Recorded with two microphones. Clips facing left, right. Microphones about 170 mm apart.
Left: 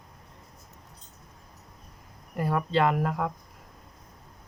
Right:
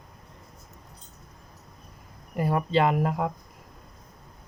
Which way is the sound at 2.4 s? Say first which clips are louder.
Right 2 dB; 10° right (ahead or behind).